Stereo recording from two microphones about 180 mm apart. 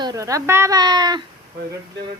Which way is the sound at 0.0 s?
20° right (ahead or behind).